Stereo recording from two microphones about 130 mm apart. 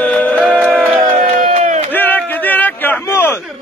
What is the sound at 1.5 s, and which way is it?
Crowd, 65° right (ahead or behind).